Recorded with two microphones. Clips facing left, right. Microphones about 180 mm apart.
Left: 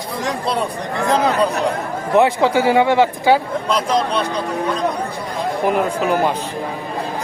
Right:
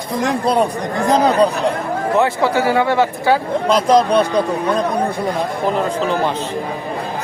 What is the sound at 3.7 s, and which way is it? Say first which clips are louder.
Speech: right 6 dB; 35° right (ahead or behind).